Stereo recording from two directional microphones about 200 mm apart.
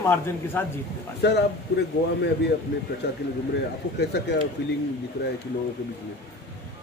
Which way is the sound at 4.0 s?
55° left (ahead or behind).